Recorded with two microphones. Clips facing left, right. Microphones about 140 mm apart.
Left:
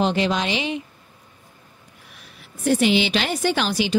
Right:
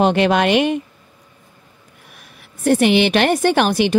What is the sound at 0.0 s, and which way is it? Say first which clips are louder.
Speech: right 6 dB; 60° right (ahead or behind).